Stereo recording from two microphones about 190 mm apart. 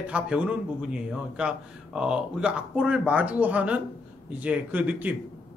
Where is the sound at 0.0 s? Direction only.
5° right (ahead or behind).